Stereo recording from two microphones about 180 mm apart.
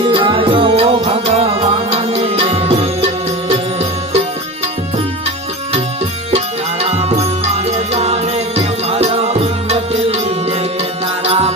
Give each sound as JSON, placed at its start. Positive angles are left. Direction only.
{"t": 0.0, "sound": "music", "side_deg": -30}
{"t": 6.3, "sound": "music", "side_deg": -35}